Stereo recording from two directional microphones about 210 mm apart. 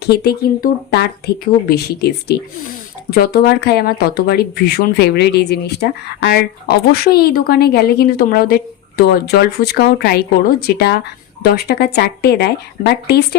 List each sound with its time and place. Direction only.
0.0 s speech: 50° left (ahead or behind)